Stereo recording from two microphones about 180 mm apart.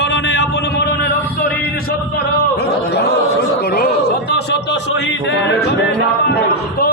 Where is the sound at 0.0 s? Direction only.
75° left (ahead or behind).